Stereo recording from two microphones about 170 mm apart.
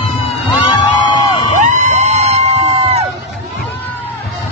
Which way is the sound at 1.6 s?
45° right (ahead or behind).